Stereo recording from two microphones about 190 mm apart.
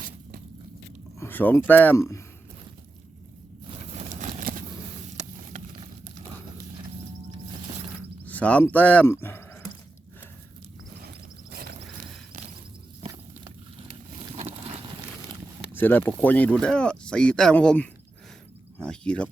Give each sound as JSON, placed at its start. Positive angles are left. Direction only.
{"t": 1.2, "sound": "speech", "side_deg": 10}
{"t": 4.1, "sound": "a sound", "side_deg": -45}
{"t": 8.2, "sound": "speech", "side_deg": 10}
{"t": 11.5, "sound": "a sound", "side_deg": -50}
{"t": 14.3, "sound": "vehicle", "side_deg": -30}
{"t": 15.7, "sound": "speech", "side_deg": 10}